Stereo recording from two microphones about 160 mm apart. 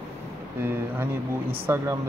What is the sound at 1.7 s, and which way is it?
Speech, 20° right (ahead or behind).